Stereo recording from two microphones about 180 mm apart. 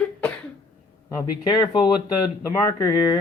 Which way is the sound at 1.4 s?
25° left (ahead or behind).